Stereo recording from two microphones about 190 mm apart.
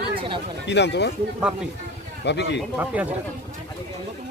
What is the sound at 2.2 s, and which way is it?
Speech, 65° left (ahead or behind).